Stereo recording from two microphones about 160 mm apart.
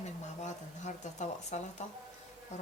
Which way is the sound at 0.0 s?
45° left (ahead or behind).